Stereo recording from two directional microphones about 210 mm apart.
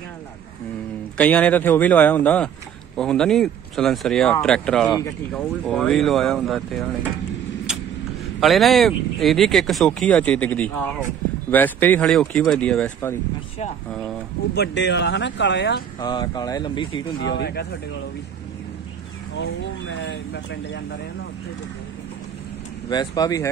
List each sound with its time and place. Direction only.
1.1 s speech: 5° left (ahead or behind)
8.4 s speech: centre (ahead or behind)
14.5 s speech: 55° left (ahead or behind)
16.0 s speech: 20° left (ahead or behind)
17.2 s speech: 55° left (ahead or behind)
19.3 s speech: 60° left (ahead or behind)
22.8 s speech: 20° left (ahead or behind)